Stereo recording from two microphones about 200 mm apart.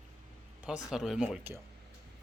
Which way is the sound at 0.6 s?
5° right (ahead or behind).